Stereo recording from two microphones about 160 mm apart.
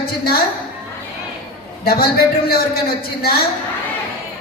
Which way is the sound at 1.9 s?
70° left (ahead or behind).